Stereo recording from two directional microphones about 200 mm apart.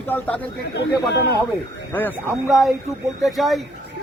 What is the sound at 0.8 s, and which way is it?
Speech, 55° left (ahead or behind).